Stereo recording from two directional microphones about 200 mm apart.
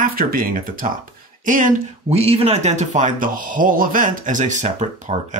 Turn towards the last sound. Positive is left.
turn(degrees=-35)  # may be behind; listen again after turning